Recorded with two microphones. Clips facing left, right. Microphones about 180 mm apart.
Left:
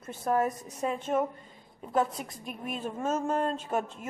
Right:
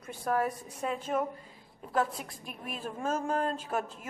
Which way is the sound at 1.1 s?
5° left (ahead or behind).